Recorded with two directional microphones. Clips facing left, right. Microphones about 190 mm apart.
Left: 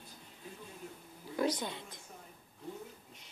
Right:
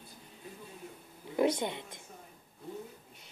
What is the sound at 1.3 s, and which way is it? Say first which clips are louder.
Wild animals: right 5 dB; 25° right (ahead or behind).